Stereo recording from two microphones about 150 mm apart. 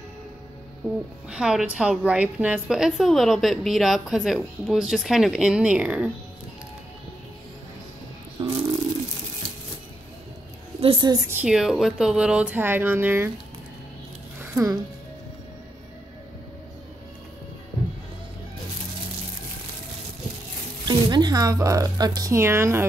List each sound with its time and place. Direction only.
0.8 s a woman's voice: 5° right (ahead or behind)
8.4 s bird: 30° right (ahead or behind)
10.8 s a woman's voice: 35° right (ahead or behind)
11.4 s speech: 5° right (ahead or behind)
14.4 s music: 20° right (ahead or behind)
20.8 s speech: 30° right (ahead or behind)